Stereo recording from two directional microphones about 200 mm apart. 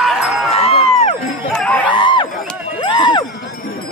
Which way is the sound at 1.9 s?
25° left (ahead or behind).